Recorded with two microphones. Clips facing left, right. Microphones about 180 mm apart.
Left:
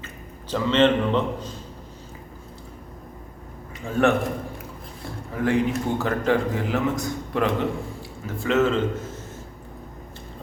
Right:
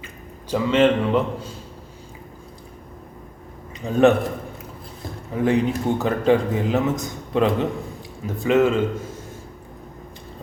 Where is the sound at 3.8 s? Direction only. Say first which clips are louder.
Right 5 dB; 20° right (ahead or behind).